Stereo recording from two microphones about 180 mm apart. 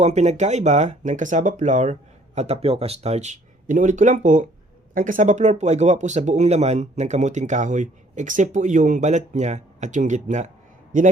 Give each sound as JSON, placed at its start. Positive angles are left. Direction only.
{"t": 0.0, "sound": "a man's voice", "side_deg": -40}